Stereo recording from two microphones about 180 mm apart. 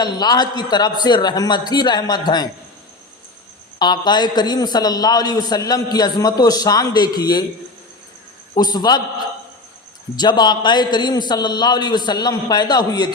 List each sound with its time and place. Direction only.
0.0 s a man's voice: 25° left (ahead or behind)
3.8 s a man's voice: 25° left (ahead or behind)
8.5 s a man's voice: 20° left (ahead or behind)
10.2 s a man's voice: 25° left (ahead or behind)